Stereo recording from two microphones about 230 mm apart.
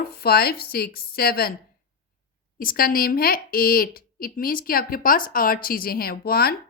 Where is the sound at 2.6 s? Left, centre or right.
Left.